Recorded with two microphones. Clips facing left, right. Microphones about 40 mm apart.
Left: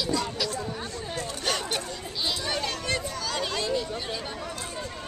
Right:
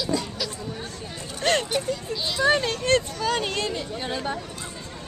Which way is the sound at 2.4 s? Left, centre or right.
Right.